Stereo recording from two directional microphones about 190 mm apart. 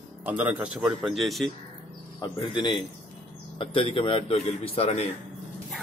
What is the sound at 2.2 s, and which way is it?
A man's voice, 25° left (ahead or behind).